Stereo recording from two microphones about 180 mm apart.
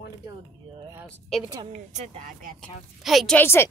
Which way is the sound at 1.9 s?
45° right (ahead or behind).